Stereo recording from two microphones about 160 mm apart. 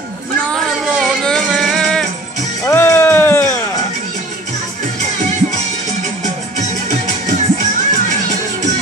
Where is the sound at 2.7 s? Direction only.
15° left (ahead or behind).